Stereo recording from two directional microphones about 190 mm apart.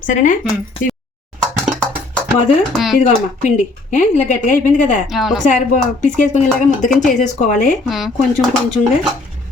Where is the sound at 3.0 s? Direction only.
40° left (ahead or behind).